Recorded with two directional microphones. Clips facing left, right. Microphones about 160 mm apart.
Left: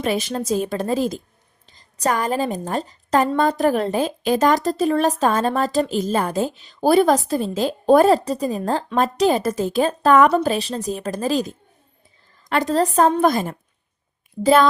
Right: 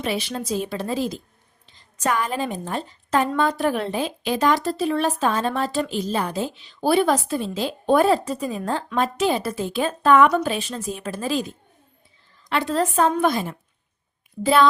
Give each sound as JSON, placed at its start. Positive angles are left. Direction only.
{"t": 0.0, "sound": "a woman's voice", "side_deg": 45}